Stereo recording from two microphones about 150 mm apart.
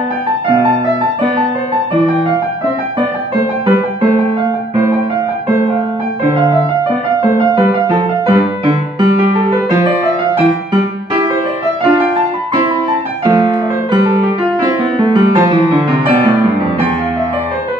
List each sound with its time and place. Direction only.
7.5 s music: 25° right (ahead or behind)
9.3 s music: 35° right (ahead or behind)